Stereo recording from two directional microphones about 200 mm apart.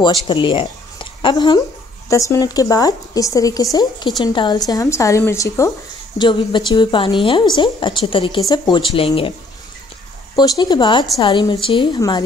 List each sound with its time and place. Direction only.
0.0 s a woman's voice: 25° left (ahead or behind)
10.3 s a woman's voice: 20° left (ahead or behind)